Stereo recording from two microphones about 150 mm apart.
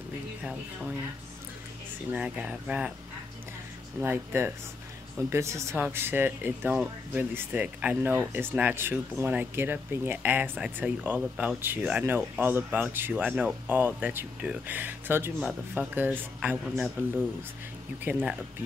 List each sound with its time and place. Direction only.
2.0 s speech: 10° right (ahead or behind)
4.0 s speech: 15° right (ahead or behind)
18.1 s speech: 15° right (ahead or behind)